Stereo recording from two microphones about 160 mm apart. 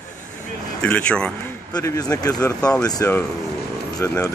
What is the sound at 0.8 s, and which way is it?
Speech, 5° left (ahead or behind).